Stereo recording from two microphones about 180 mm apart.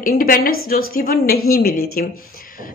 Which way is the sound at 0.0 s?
55° left (ahead or behind).